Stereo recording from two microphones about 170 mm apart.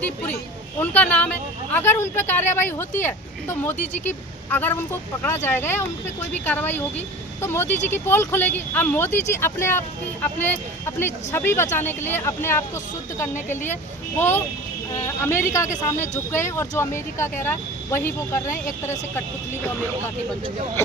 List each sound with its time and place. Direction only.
0.0 s speech: 10° left (ahead or behind)
14.2 s speech: 10° left (ahead or behind)
18.4 s speech: 50° left (ahead or behind)